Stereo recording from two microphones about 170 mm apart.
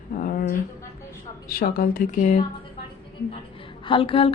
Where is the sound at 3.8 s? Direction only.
30° left (ahead or behind).